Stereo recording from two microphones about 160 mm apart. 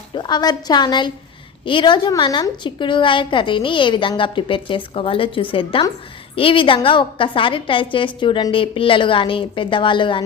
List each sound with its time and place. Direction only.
0.1 s a woman's voice: 25° left (ahead or behind)